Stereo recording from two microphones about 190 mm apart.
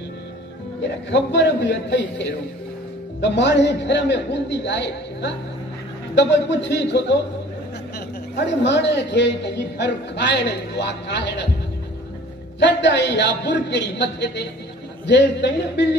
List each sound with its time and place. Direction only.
0.8 s a man's voice: 70° left (ahead or behind)
8.4 s a man's voice: 65° left (ahead or behind)
12.5 s a man's voice: 65° left (ahead or behind)